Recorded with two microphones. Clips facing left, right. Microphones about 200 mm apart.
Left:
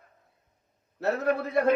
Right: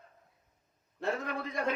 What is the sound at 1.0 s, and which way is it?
Speech, 45° left (ahead or behind).